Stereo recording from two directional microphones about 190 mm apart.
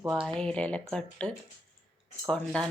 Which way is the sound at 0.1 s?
Centre (ahead or behind).